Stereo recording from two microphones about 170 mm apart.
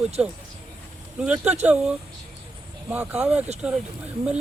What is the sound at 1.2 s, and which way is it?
Speech, 5° right (ahead or behind).